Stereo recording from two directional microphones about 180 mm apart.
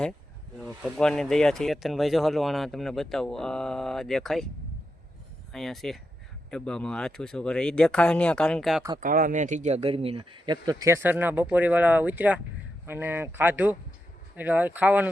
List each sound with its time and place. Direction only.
0.6 s speech: centre (ahead or behind)
5.5 s speech: centre (ahead or behind)
9.0 s speech: 50° right (ahead or behind); by 15.1 s 10° right (ahead or behind)